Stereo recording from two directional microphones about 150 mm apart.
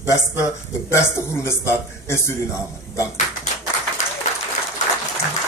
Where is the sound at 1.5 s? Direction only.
15° left (ahead or behind).